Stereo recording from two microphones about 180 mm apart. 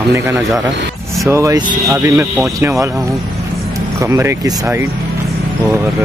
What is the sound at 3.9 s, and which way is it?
Speech, 15° right (ahead or behind).